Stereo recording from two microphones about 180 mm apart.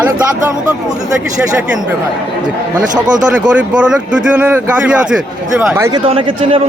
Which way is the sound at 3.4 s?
5° right (ahead or behind).